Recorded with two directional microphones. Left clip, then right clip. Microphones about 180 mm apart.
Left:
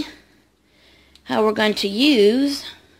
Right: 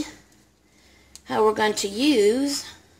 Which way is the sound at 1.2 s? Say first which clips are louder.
Left 2 dB; 40° left (ahead or behind).